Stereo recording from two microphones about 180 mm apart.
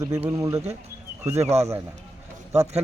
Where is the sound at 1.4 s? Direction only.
35° right (ahead or behind).